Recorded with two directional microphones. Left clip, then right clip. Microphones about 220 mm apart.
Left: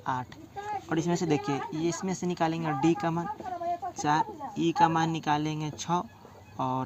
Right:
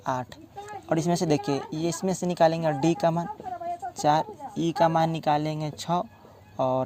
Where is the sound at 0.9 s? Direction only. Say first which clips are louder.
Right 5 dB; 55° right (ahead or behind).